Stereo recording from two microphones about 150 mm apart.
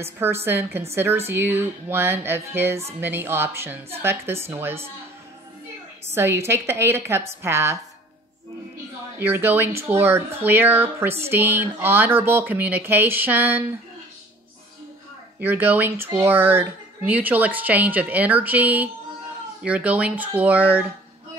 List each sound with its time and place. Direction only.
0.0 s speech: 15° right (ahead or behind)
6.1 s speech: 15° right (ahead or behind)
9.2 s speech: 15° right (ahead or behind)
15.3 s speech: 15° right (ahead or behind)